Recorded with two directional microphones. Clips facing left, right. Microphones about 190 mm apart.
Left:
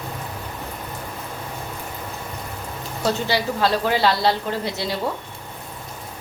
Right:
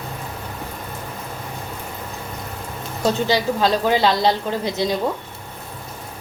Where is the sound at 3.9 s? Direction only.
20° right (ahead or behind).